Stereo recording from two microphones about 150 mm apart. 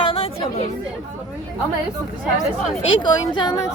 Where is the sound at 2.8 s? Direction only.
30° left (ahead or behind).